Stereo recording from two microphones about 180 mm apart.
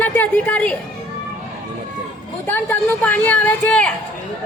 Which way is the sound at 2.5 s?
10° left (ahead or behind).